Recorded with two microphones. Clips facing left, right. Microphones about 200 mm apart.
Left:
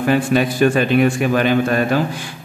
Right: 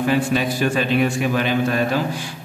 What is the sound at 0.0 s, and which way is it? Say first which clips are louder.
A man's voice: left 3 dB; 55° left (ahead or behind).